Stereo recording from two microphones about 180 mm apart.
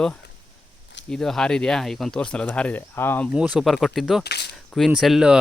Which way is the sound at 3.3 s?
5° right (ahead or behind).